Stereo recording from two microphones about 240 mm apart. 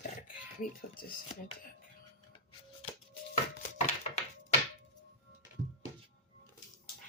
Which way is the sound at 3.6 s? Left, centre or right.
Left.